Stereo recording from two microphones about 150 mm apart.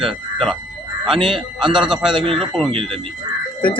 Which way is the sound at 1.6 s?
30° right (ahead or behind).